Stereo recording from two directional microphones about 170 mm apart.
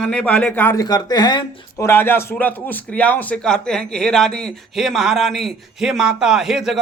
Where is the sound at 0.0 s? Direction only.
5° left (ahead or behind); by 1.9 s 25° left (ahead or behind).